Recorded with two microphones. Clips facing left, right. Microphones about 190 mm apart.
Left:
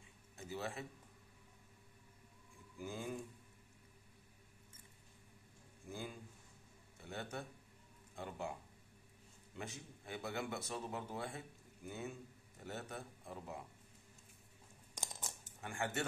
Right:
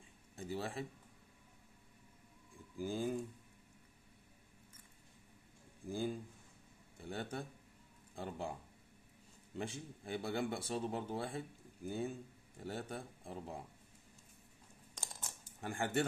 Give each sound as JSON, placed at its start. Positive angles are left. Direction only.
{"t": 0.4, "sound": "a man's voice", "side_deg": -30}
{"t": 2.8, "sound": "speech", "side_deg": -30}
{"t": 5.9, "sound": "a sound", "side_deg": -30}
{"t": 8.2, "sound": "speech", "side_deg": -30}
{"t": 9.6, "sound": "speech", "side_deg": -30}
{"t": 15.6, "sound": "speech", "side_deg": -35}